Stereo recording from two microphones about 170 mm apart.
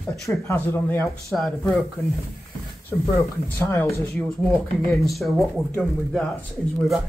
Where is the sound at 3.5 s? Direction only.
15° left (ahead or behind).